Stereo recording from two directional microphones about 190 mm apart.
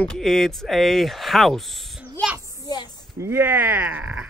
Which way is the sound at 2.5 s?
20° left (ahead or behind).